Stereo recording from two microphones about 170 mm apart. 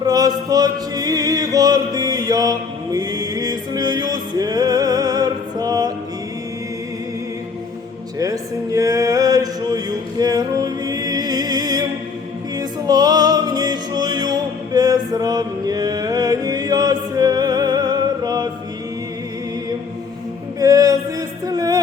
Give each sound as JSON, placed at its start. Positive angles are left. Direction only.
{"t": 0.0, "sound": "music", "side_deg": -20}
{"t": 8.2, "sound": "mantra", "side_deg": -20}
{"t": 12.5, "sound": "music", "side_deg": -20}
{"t": 20.6, "sound": "a sound", "side_deg": -20}